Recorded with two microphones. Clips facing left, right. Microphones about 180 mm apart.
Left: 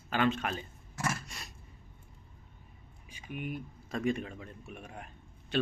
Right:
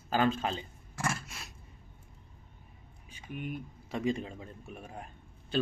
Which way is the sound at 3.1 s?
10° left (ahead or behind).